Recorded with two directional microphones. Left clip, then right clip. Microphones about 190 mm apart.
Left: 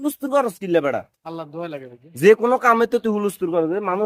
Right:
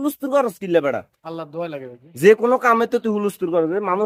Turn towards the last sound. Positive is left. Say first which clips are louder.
# right 1 dB
turn(degrees=0)  # may be behind; listen again after turning